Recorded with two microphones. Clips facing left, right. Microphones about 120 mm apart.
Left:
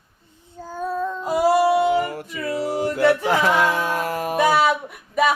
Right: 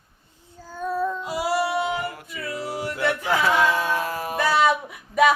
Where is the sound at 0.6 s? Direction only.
50° left (ahead or behind).